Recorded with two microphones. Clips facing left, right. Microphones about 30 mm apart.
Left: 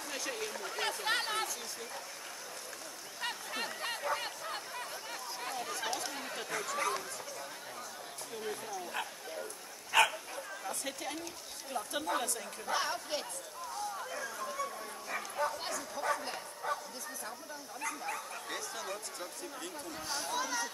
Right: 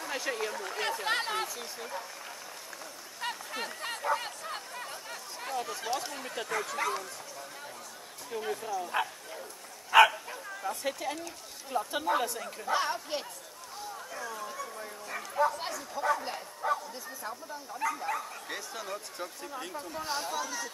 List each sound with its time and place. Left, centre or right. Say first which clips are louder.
0.0 s speech: right 5 dB; centre
3.2 s a sound: right 2 dB; centre
5.4 s speech: right 4 dB; centre
8.3 s speech: right 7 dB; centre
10.1 s a sound: right 2 dB; centre
11.7 s speech: right 6 dB; centre
13.9 s a sound: right 1 dB; centre
15.0 s speech: right 6 dB; centre
20.2 s speech: even; centre